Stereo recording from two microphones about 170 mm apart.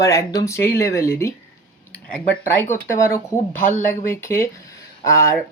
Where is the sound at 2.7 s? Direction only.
50° left (ahead or behind).